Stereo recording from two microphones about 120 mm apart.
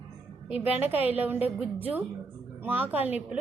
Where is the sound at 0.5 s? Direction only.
15° right (ahead or behind).